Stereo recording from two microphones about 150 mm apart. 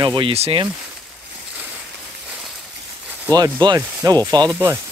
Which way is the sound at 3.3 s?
30° right (ahead or behind).